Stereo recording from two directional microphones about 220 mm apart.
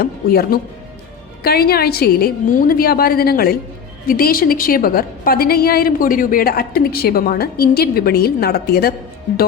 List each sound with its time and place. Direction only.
0.0 s a woman's voice: 45° left (ahead or behind)